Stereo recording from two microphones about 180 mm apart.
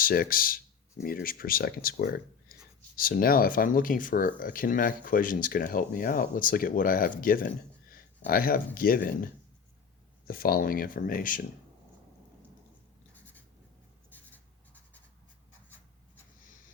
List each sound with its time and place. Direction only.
0.0 s speech: 55° left (ahead or behind)
14.1 s writing: 10° left (ahead or behind)